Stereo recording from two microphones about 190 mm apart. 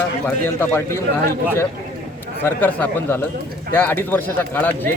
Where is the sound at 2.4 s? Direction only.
10° left (ahead or behind).